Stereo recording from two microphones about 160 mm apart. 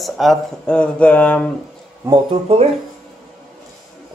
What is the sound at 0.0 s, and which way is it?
Speech, centre (ahead or behind).